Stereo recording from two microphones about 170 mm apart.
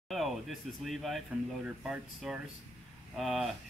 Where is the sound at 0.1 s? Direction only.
Centre (ahead or behind).